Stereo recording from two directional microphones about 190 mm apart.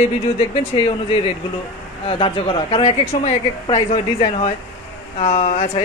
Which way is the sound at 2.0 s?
25° left (ahead or behind).